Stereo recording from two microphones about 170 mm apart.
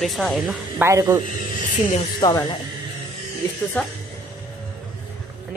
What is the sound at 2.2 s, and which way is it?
Speech, 25° left (ahead or behind).